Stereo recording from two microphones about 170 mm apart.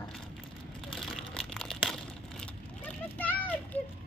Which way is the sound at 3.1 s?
10° left (ahead or behind).